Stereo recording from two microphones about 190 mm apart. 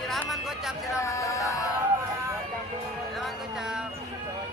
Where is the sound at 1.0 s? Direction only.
15° left (ahead or behind).